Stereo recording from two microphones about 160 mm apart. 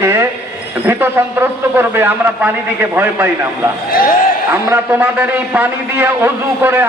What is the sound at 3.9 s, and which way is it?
Speech, 65° left (ahead or behind).